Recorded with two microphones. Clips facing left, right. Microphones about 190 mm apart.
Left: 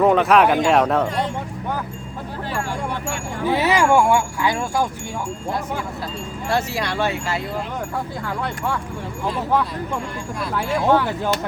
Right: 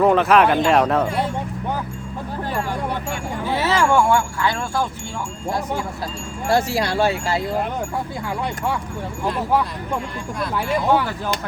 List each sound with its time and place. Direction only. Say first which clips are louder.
0.0 s speech: even; centre (ahead or behind)
3.4 s speech: left 2 dB; 15° left (ahead or behind)
6.5 s speech: right 4 dB; 35° right (ahead or behind)
9.5 s speech: left 1 dB; 10° right (ahead or behind)